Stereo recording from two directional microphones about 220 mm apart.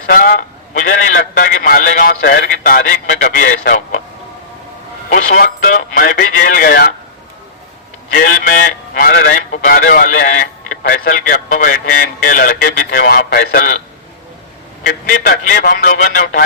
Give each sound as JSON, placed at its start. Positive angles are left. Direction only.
{"t": 0.1, "sound": "a man's voice", "side_deg": 40}
{"t": 5.0, "sound": "a man's voice", "side_deg": 40}
{"t": 8.1, "sound": "a man's voice", "side_deg": 40}
{"t": 15.0, "sound": "a man's voice", "side_deg": 40}